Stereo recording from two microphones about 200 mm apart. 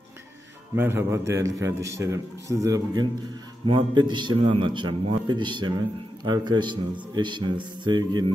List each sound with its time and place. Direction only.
0.7 s a man's voice: 10° right (ahead or behind)